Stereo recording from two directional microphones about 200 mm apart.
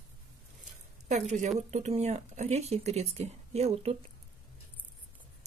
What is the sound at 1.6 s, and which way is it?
Speech, 35° right (ahead or behind).